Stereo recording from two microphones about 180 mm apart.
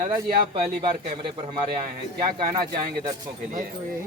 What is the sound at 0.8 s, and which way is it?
Speech, 30° right (ahead or behind).